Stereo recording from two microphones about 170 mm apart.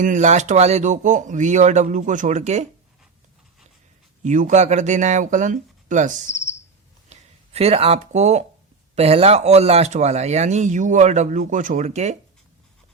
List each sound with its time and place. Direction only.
0.0 s speech: 45° right (ahead or behind)
4.2 s speech: 45° right (ahead or behind)